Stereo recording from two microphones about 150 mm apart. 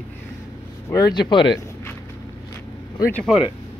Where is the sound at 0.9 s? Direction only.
25° left (ahead or behind).